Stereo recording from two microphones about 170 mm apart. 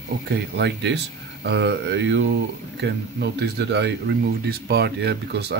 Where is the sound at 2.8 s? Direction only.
80° right.